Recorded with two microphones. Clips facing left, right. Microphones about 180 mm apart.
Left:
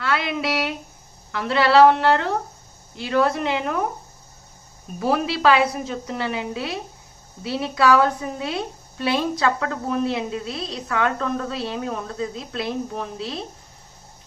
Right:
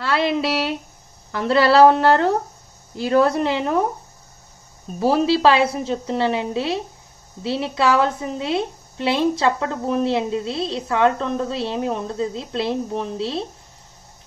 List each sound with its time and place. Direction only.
0.0 s a sound: 30° right (ahead or behind)
1.3 s a woman's voice: 35° right (ahead or behind)
4.9 s a woman's voice: 30° right (ahead or behind)